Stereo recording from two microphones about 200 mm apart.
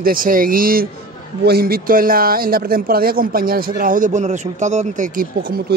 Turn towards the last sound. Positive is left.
turn(degrees=-50)  # may be behind; listen again after turning